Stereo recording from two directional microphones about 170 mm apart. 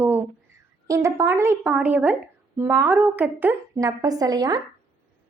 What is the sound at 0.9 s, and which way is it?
A woman's voice, 15° right (ahead or behind).